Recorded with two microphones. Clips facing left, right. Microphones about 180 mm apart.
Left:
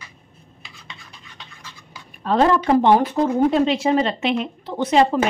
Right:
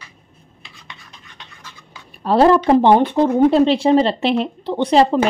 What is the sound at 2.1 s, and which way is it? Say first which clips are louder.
A woman's voice: right 4 dB; 35° right (ahead or behind).